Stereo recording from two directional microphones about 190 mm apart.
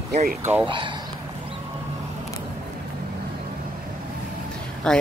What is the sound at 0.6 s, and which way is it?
Speech, 25° right (ahead or behind).